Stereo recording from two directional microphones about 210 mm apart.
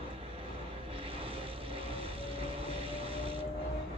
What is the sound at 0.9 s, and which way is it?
Vehicle, 25° right (ahead or behind).